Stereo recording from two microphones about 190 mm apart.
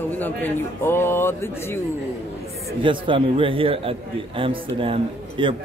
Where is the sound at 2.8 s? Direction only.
25° right (ahead or behind).